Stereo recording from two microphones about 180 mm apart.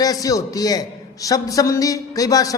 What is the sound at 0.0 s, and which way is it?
A man's voice, 20° left (ahead or behind).